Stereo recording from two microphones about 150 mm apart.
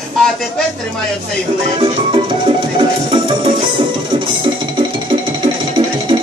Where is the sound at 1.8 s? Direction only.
35° right (ahead or behind).